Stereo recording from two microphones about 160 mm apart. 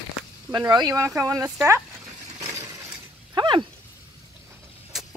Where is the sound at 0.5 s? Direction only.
25° right (ahead or behind).